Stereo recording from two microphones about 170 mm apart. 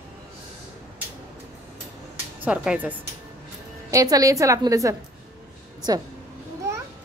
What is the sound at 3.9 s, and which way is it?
A woman's voice, 20° right (ahead or behind).